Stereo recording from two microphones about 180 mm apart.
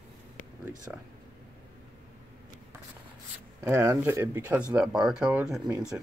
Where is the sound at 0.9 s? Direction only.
5° right (ahead or behind).